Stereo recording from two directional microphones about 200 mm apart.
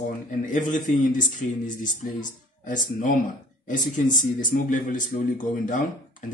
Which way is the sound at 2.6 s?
40° left (ahead or behind).